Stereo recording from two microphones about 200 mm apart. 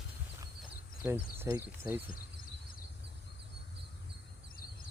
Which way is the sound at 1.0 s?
10° right (ahead or behind).